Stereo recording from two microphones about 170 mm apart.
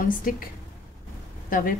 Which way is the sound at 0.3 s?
55° left (ahead or behind).